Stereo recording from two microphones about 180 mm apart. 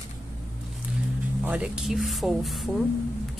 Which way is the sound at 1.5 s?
5° right (ahead or behind).